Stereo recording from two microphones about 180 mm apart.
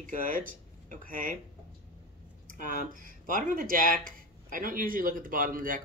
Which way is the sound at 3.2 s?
50° right (ahead or behind).